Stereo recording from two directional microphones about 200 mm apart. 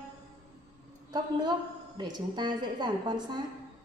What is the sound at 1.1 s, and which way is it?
Speech, 20° right (ahead or behind).